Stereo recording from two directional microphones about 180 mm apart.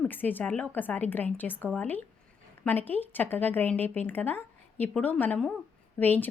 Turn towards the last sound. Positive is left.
turn(degrees=10)  # may be behind; listen again after turning